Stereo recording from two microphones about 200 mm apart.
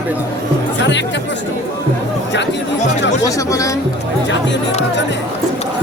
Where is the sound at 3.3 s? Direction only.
15° left (ahead or behind).